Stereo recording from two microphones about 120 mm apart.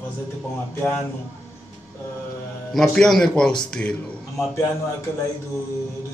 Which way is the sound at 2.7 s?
5° left (ahead or behind).